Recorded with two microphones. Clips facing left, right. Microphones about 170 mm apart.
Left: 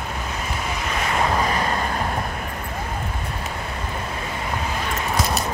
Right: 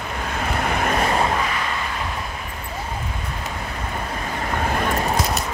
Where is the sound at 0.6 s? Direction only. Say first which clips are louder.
Right 8 dB; 60° right (ahead or behind).